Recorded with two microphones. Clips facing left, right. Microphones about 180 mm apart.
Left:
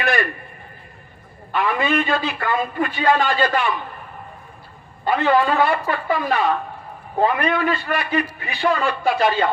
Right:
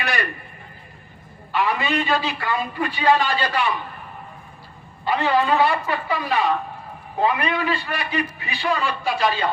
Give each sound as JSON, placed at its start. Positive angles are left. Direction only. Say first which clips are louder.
{"t": 1.5, "sound": "a man's voice", "louder": "left 2 dB", "side_deg": 50}
{"t": 5.0, "sound": "a man's voice", "louder": "left 2 dB", "side_deg": 50}